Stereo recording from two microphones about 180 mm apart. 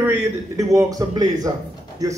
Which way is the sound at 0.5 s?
20° right (ahead or behind).